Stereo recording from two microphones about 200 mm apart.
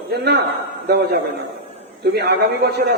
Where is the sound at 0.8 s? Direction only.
55° right (ahead or behind).